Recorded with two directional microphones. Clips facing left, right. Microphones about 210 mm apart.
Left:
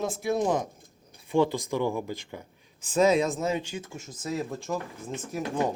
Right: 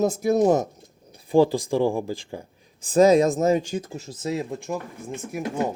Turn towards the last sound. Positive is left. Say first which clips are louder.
# right 2 dB
turn(degrees=-10)  # may be behind; listen again after turning